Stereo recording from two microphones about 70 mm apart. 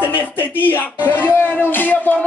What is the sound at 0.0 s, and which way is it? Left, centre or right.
Speech, left.